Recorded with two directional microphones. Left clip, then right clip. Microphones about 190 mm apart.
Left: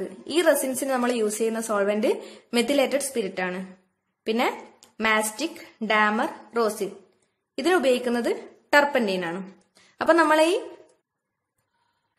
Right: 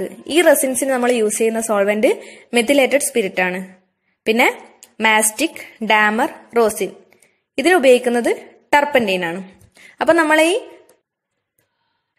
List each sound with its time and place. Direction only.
0.3 s a woman's voice: 25° right (ahead or behind)
4.2 s a sound: 30° right (ahead or behind)
5.0 s a woman's voice: 30° right (ahead or behind)